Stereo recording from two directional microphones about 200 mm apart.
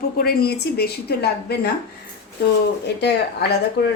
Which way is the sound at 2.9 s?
55° left (ahead or behind).